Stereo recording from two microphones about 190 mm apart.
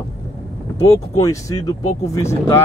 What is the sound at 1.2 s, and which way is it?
Speech, 15° left (ahead or behind).